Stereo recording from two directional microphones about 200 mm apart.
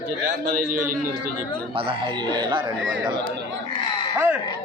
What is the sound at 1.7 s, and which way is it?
Speech, 25° right (ahead or behind).